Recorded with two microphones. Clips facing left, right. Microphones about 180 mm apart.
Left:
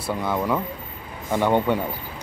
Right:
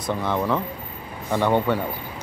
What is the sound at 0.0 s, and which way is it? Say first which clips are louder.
Speech: right 1 dB; 10° left (ahead or behind).